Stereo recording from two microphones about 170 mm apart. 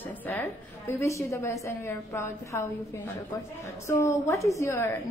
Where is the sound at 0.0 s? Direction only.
10° left (ahead or behind).